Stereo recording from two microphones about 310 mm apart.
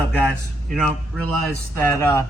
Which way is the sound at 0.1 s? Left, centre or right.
Centre.